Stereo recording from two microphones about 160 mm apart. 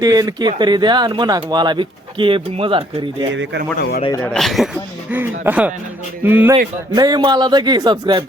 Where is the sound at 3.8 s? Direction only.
85° left.